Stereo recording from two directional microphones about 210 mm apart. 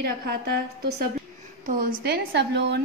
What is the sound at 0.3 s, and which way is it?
A woman's voice, 50° right (ahead or behind).